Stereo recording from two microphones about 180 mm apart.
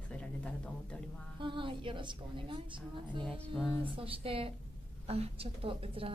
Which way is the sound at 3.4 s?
Centre (ahead or behind).